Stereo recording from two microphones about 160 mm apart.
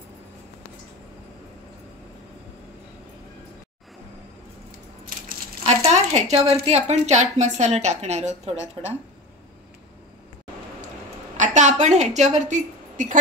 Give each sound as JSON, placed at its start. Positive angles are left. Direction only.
{"t": 5.8, "sound": "a sound", "side_deg": -40}
{"t": 6.6, "sound": "a woman's voice", "side_deg": -45}
{"t": 11.3, "sound": "a woman's voice", "side_deg": -50}